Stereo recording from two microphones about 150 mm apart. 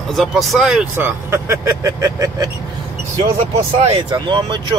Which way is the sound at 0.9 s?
15° right (ahead or behind).